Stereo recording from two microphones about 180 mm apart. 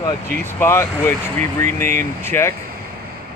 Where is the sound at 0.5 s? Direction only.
15° left (ahead or behind).